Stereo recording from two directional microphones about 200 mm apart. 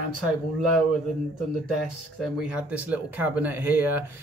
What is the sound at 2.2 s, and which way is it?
Speech, 5° right (ahead or behind).